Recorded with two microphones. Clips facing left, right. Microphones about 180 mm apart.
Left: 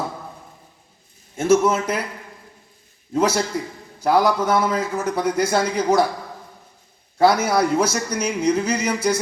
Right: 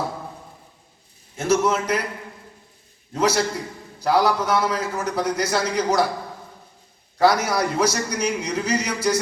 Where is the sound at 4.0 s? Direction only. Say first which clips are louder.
Left 2 dB; 50° left (ahead or behind).